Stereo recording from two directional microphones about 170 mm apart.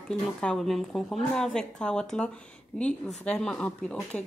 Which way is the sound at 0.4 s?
5° left (ahead or behind).